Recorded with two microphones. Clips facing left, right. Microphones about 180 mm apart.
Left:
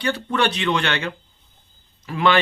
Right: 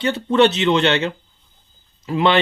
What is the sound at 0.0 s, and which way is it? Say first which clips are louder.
Speech: right 6 dB; 25° right (ahead or behind).